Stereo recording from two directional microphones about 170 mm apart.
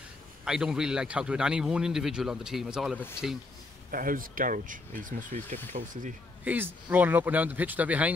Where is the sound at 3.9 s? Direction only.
55° right (ahead or behind).